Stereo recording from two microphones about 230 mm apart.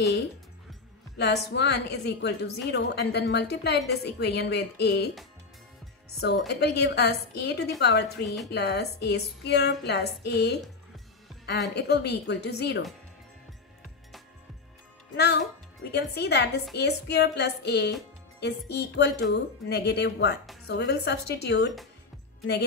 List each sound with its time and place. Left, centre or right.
1.1 s a woman's voice: left
6.2 s a woman's voice: left
11.7 s a woman's voice: left
15.1 s a woman's voice: left